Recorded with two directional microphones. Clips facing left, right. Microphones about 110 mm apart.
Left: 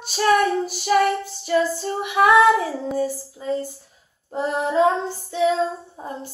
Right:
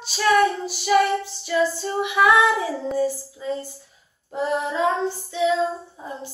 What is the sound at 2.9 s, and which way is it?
Child singing, 45° left (ahead or behind).